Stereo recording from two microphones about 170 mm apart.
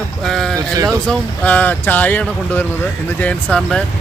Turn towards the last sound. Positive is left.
turn(degrees=5)  # may be behind; listen again after turning